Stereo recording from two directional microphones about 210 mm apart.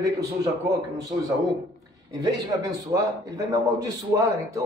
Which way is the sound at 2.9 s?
15° right (ahead or behind).